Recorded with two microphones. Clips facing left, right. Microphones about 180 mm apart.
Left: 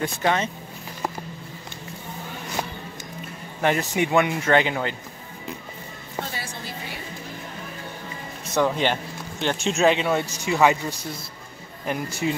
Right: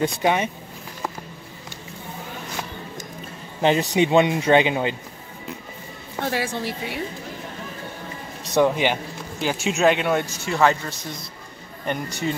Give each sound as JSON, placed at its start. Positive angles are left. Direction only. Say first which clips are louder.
{"t": 0.0, "sound": "speech", "louder": "right 3 dB", "side_deg": -15}
{"t": 3.6, "sound": "speech", "louder": "right 4 dB", "side_deg": -20}
{"t": 6.2, "sound": "speech", "louder": "right 9 dB", "side_deg": -75}
{"t": 8.5, "sound": "speech", "louder": "right 3 dB", "side_deg": -10}
{"t": 10.4, "sound": "speech", "louder": "left 2 dB", "side_deg": 10}